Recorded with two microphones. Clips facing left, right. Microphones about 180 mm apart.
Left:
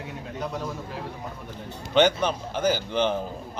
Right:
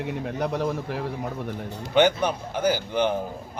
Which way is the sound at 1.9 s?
10° right (ahead or behind).